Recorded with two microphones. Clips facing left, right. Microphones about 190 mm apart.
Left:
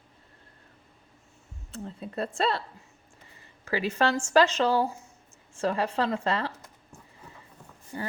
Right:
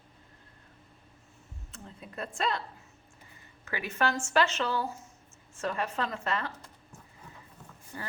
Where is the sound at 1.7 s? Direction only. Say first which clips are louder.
Left 10 dB; 35° left (ahead or behind).